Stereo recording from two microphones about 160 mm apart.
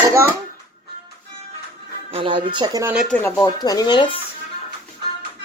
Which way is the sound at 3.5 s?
25° left (ahead or behind).